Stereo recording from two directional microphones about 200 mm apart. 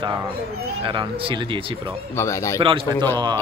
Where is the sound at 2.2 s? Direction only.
15° left (ahead or behind).